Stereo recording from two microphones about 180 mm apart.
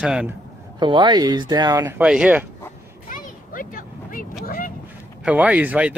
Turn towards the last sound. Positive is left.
turn(degrees=-10)  # may be behind; listen again after turning